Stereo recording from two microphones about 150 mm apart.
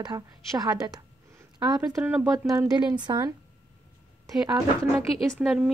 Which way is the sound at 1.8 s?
20° right (ahead or behind).